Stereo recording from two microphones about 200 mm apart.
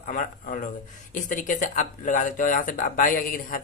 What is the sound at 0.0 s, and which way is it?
A man's voice, 40° left (ahead or behind).